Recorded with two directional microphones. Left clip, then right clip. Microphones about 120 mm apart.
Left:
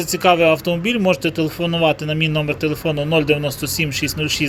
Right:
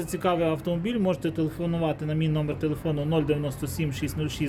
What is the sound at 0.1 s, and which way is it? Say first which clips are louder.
Speech: left 12 dB; 25° left (ahead or behind).